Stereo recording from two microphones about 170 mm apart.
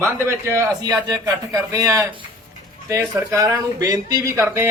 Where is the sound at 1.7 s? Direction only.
20° right (ahead or behind).